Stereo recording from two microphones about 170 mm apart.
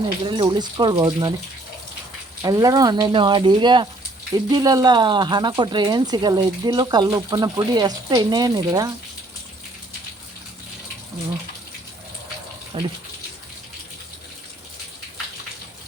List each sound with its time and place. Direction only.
0.3 s speech: 25° right (ahead or behind)
2.4 s speech: 20° right (ahead or behind)
12.7 s speech: 30° right (ahead or behind)